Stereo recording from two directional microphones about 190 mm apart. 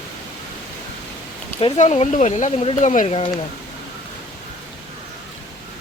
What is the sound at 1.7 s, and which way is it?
Speech, 35° left (ahead or behind).